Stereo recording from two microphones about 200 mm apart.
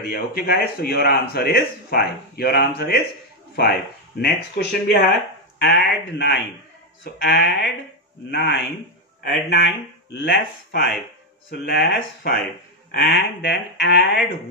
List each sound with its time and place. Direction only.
0.0 s a man's voice: 50° left (ahead or behind)